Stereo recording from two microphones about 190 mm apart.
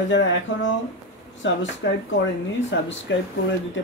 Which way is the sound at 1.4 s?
75° left (ahead or behind).